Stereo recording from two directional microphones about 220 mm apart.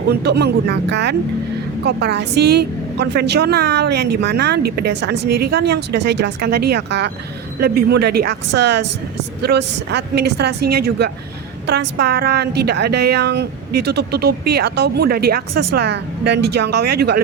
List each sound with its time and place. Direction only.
0.1 s a woman's voice: 50° right (ahead or behind)